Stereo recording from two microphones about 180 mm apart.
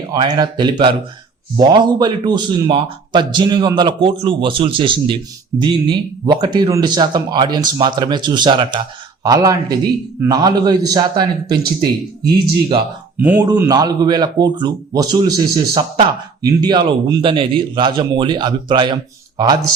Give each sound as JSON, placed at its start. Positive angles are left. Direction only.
{"t": 0.1, "sound": "speech", "side_deg": -25}
{"t": 13.1, "sound": "speech", "side_deg": -10}
{"t": 13.5, "sound": "speech", "side_deg": -20}